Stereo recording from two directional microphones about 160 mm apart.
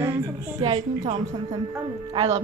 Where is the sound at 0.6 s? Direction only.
35° right (ahead or behind).